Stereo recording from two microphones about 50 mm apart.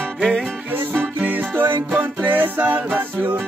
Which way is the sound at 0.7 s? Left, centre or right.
Right.